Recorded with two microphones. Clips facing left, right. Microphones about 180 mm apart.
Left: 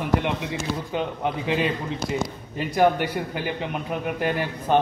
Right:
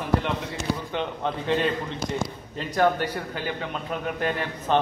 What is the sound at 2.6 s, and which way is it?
A man's voice, 15° left (ahead or behind).